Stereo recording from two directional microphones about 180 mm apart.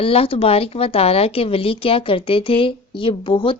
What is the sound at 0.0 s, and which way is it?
A woman's voice, 30° left (ahead or behind).